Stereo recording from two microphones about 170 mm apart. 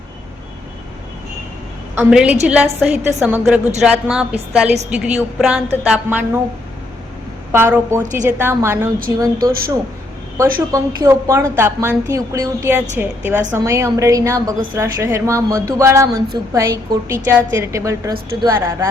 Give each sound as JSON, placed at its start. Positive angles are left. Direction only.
{"t": 2.0, "sound": "a woman's voice", "side_deg": -5}
{"t": 7.5, "sound": "a woman's voice", "side_deg": -15}
{"t": 8.0, "sound": "a woman's voice", "side_deg": -50}
{"t": 8.4, "sound": "a woman's voice", "side_deg": -15}